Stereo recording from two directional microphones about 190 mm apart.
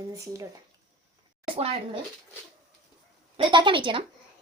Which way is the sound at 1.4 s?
30° right (ahead or behind).